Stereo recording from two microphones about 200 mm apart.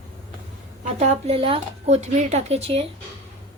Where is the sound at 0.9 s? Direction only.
30° right (ahead or behind).